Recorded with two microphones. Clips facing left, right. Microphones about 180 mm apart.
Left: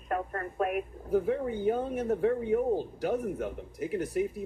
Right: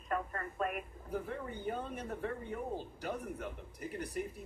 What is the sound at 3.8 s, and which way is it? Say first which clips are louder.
Speech: left 10 dB; 90° left.